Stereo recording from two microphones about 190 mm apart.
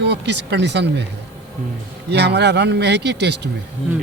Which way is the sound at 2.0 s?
60° right (ahead or behind).